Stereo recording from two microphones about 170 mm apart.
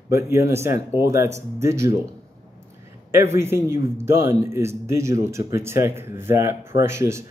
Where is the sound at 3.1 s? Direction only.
15° right (ahead or behind).